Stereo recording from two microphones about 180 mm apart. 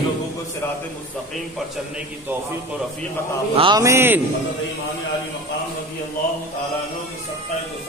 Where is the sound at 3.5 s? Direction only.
25° right (ahead or behind).